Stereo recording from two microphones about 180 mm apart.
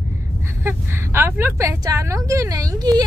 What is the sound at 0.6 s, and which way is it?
A woman's voice, 15° right (ahead or behind).